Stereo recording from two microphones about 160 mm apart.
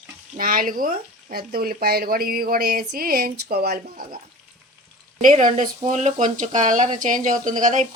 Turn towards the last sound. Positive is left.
turn(degrees=-50)  # may be behind; listen again after turning